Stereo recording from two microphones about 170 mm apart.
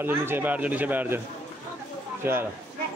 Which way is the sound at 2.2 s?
15° right (ahead or behind).